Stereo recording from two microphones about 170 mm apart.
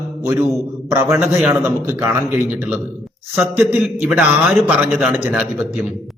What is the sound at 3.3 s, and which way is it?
A man's voice, 10° right (ahead or behind).